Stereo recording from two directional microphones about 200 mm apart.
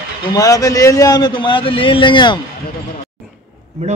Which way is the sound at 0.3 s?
15° left (ahead or behind).